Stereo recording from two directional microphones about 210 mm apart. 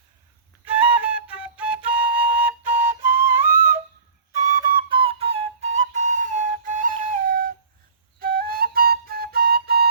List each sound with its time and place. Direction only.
0.6 s flute: 5° right (ahead or behind); by 9.9 s 50° right (ahead or behind)